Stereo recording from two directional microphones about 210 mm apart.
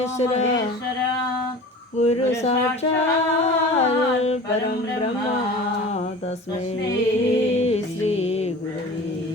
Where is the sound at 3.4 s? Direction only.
30° left (ahead or behind).